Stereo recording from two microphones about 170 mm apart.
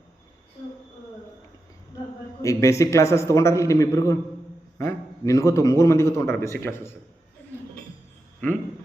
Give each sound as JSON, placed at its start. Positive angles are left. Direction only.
{"t": 2.4, "sound": "a man's voice", "side_deg": 15}